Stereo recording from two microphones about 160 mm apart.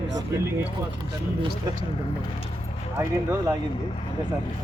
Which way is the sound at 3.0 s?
20° right (ahead or behind).